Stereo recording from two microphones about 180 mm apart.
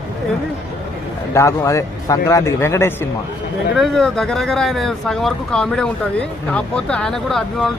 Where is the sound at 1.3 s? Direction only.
15° left (ahead or behind).